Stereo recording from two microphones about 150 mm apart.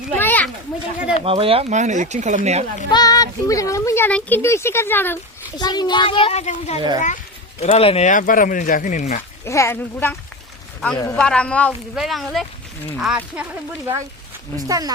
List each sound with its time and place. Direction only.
0.2 s children playing: 10° left (ahead or behind)
1.2 s speech: 40° right (ahead or behind)
1.7 s speech: 55° right (ahead or behind)
2.9 s speech: 25° left (ahead or behind)
5.5 s a child's voice: 25° left (ahead or behind); by 6.7 s 50° left (ahead or behind)
6.7 s speech: 30° right (ahead or behind)
7.6 s a child's voice: 40° left (ahead or behind)
8.1 s speech: 65° left (ahead or behind)
9.4 s speech: 20° left (ahead or behind); by 13.4 s 5° right (ahead or behind)
14.5 s speech: 25° right (ahead or behind)